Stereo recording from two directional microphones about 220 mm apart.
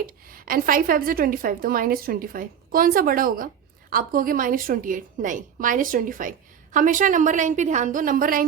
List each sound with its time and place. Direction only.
0.3 s a woman's voice: 40° right (ahead or behind)